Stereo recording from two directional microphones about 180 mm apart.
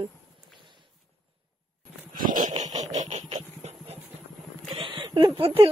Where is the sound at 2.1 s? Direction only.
50° right (ahead or behind); by 5.3 s 30° right (ahead or behind).